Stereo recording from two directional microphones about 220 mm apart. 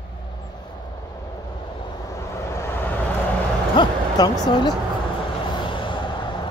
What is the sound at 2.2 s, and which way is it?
Vehicle, 10° left (ahead or behind).